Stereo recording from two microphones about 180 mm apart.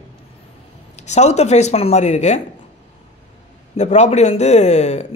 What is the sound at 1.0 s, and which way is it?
A man's voice, 40° left (ahead or behind).